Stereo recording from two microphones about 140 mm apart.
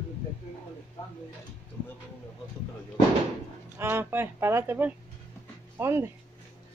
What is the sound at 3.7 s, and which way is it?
Speech, 15° right (ahead or behind).